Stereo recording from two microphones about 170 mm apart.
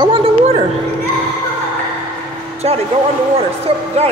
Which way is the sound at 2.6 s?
35° right (ahead or behind).